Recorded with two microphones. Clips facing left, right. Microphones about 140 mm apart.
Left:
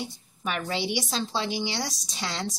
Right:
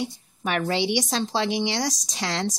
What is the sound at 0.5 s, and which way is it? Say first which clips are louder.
Speech: right 5 dB; 70° right (ahead or behind).